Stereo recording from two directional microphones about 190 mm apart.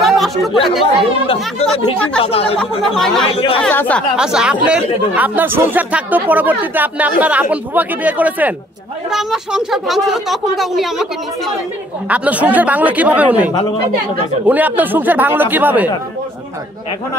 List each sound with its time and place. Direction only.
0.0 s chatter: centre (ahead or behind)
1.2 s speech: 30° left (ahead or behind)
2.8 s speech: centre (ahead or behind)
4.2 s speech: 5° right (ahead or behind)